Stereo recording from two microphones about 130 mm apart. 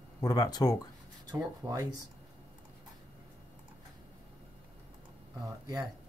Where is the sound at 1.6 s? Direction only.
25° right (ahead or behind).